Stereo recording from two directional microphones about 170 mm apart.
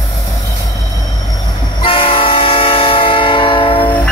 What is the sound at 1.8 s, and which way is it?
Train, 30° left (ahead or behind).